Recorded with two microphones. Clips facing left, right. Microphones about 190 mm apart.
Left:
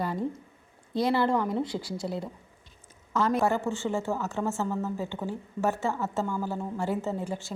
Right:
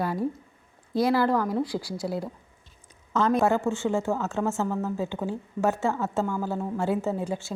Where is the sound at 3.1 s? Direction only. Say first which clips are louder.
Right 3 dB; 20° right (ahead or behind).